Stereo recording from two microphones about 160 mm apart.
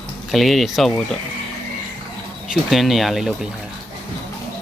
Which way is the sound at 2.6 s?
Centre (ahead or behind).